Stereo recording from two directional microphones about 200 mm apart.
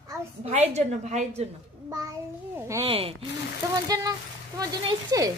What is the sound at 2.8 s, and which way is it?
Speech, 30° right (ahead or behind).